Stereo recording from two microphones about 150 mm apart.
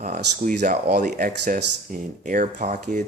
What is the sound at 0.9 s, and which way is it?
Speech, 60° right (ahead or behind).